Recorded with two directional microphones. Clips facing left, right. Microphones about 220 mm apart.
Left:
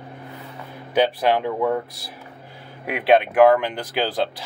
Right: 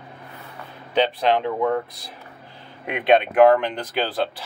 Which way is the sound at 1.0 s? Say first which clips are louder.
Left 1 dB; 10° left (ahead or behind).